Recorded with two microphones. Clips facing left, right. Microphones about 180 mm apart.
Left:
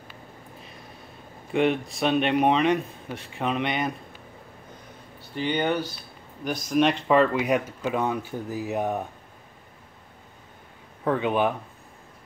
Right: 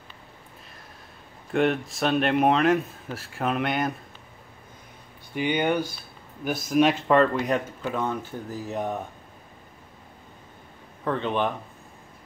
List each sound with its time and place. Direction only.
1.5 s speech: centre (ahead or behind)
5.3 s speech: 10° right (ahead or behind); by 9.0 s 10° left (ahead or behind)
11.1 s speech: 10° left (ahead or behind)